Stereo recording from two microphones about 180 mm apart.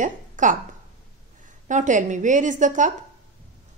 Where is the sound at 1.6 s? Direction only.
45° right (ahead or behind).